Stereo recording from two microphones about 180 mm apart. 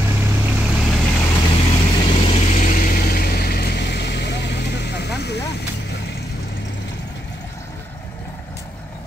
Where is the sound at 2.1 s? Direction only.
35° left (ahead or behind); by 6.7 s 70° left (ahead or behind).